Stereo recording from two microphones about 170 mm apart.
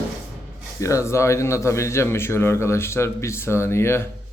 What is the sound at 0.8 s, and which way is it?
A man's voice, 20° left (ahead or behind).